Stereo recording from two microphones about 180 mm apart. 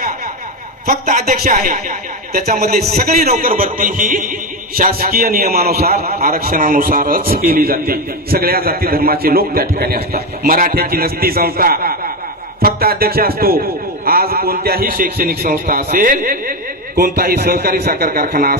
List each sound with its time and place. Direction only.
1.0 s speech: 45° right (ahead or behind)
2.6 s speech: 60° right (ahead or behind)